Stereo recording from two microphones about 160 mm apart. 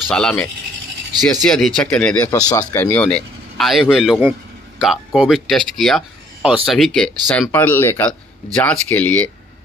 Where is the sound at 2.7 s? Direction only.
10° left (ahead or behind).